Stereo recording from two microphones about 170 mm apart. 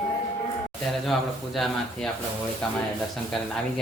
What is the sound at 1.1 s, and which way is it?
A man's voice, centre (ahead or behind).